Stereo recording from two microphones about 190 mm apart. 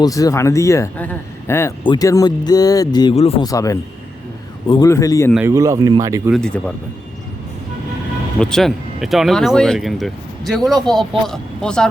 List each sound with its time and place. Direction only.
0.0 s speech: 20° left (ahead or behind)
3.4 s speech: 20° left (ahead or behind)
5.3 s speech: 10° right (ahead or behind)
6.3 s speech: 5° left (ahead or behind)
8.4 s speech: 5° left (ahead or behind)